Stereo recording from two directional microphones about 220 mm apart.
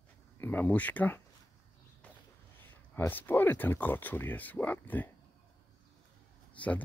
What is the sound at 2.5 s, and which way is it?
Speech, 10° left (ahead or behind).